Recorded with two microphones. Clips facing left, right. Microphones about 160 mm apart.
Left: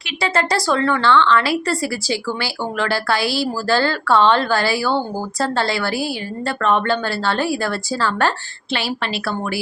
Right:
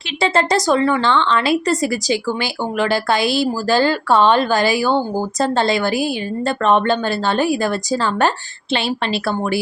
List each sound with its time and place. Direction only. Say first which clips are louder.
0.2 s a woman's voice: right 3 dB; 20° right (ahead or behind)